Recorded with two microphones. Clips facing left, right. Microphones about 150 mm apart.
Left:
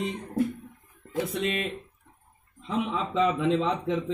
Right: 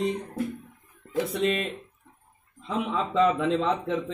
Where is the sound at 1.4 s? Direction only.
40° right (ahead or behind).